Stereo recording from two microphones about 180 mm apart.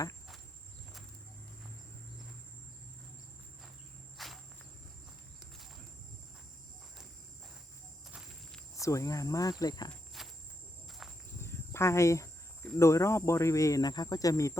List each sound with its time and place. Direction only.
4.2 s cricket: centre (ahead or behind)
8.7 s speech: 15° left (ahead or behind)
10.1 s insect: centre (ahead or behind)
11.4 s cricket: 15° left (ahead or behind)
12.8 s speech: 15° left (ahead or behind)